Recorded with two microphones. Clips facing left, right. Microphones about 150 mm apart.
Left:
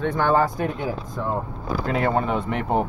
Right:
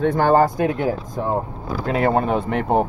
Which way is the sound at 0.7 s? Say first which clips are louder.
Right 6 dB; 65° right (ahead or behind).